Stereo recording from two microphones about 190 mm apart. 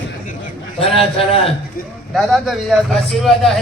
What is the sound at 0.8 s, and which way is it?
Speech, 30° left (ahead or behind).